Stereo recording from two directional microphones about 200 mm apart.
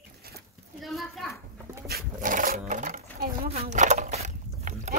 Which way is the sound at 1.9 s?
45° right (ahead or behind).